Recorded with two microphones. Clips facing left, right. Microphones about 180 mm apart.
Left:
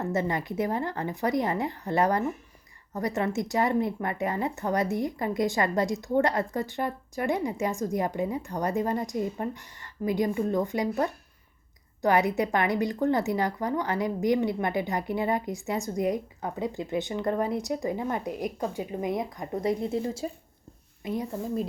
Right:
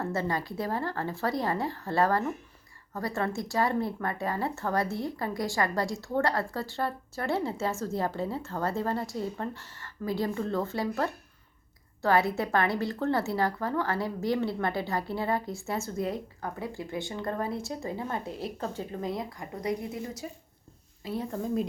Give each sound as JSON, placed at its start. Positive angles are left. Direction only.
{"t": 0.0, "sound": "a woman's voice", "side_deg": 20}
{"t": 21.0, "sound": "a woman's voice", "side_deg": 15}
{"t": 21.3, "sound": "speech", "side_deg": 0}